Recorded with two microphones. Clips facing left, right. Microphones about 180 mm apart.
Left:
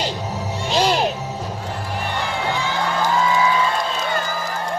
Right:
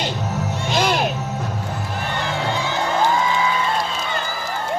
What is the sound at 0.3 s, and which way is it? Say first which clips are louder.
Music: left 1 dB; 10° left (ahead or behind).